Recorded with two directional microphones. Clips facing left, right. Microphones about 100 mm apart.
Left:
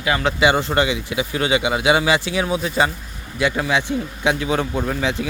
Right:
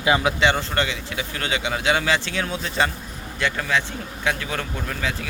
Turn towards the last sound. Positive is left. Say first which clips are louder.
# left 6 dB
turn(degrees=20)  # may be behind; listen again after turning